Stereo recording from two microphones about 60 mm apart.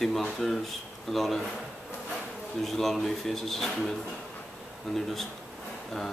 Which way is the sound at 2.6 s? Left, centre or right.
Centre.